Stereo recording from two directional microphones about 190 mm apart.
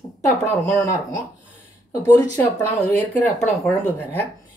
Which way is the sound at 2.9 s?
10° left (ahead or behind).